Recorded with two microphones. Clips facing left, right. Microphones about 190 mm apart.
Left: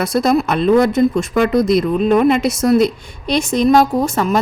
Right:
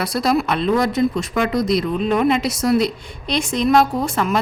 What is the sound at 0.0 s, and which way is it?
Speech, 45° left (ahead or behind).